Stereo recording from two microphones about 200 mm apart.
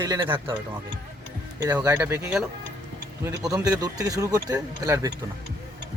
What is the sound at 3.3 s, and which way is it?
Speech, 15° right (ahead or behind).